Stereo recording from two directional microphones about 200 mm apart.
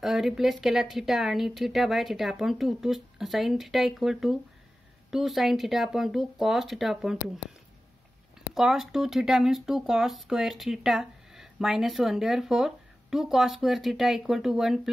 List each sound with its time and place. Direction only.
0.0 s speech: centre (ahead or behind)
8.5 s speech: centre (ahead or behind)